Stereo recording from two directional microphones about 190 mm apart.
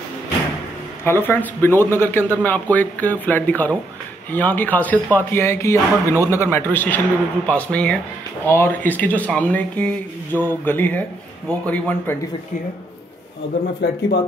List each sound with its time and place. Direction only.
1.0 s a man's voice: 10° left (ahead or behind)
13.7 s speech: 60° left (ahead or behind)